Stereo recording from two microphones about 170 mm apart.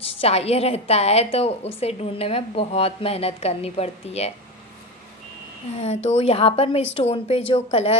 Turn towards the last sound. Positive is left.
turn(degrees=35)  # may be behind; listen again after turning